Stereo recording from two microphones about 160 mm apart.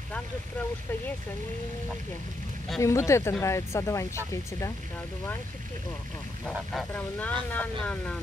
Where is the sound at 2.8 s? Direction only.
20° left (ahead or behind).